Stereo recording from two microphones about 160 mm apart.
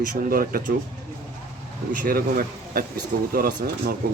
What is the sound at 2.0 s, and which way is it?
Speech, 65° right (ahead or behind).